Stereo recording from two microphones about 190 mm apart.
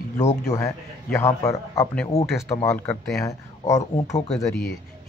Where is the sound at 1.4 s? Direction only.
15° left (ahead or behind).